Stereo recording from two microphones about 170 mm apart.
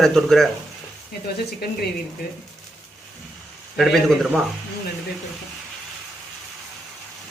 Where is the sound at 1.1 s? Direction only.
70° left (ahead or behind).